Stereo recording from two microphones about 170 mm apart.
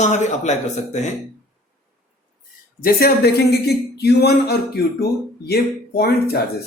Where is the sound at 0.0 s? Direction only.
45° left (ahead or behind).